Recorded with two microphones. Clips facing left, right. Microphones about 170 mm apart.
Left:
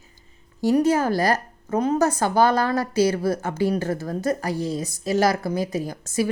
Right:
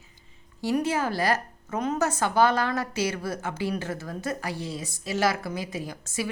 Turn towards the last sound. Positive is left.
turn(degrees=40)  # may be behind; listen again after turning